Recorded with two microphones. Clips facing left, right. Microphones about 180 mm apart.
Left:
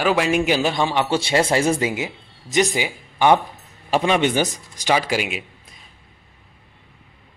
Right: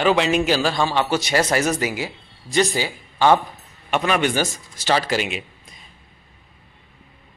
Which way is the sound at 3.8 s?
25° left (ahead or behind).